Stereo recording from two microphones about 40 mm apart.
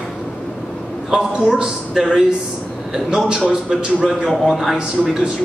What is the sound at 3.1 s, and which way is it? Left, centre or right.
A man's voice, right.